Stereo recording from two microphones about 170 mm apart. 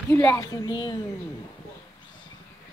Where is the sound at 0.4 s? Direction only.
20° left (ahead or behind).